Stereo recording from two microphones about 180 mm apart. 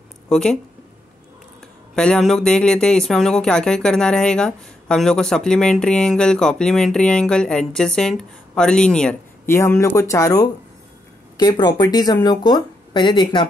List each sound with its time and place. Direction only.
0.3 s speech: 5° left (ahead or behind)
2.0 s speech: 5° left (ahead or behind); by 13.5 s 25° left (ahead or behind)